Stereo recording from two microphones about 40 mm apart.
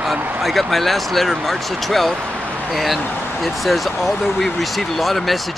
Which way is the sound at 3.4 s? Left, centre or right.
Centre.